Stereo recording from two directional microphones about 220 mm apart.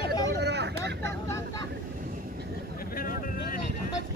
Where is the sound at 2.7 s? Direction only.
40° left (ahead or behind).